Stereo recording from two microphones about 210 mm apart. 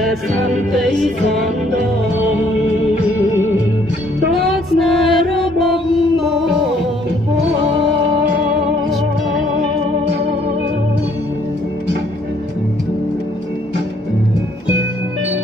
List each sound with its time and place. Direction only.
0.0 s music: centre (ahead or behind)
4.5 s music: centre (ahead or behind)